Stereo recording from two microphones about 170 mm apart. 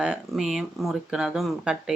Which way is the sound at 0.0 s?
5° right (ahead or behind).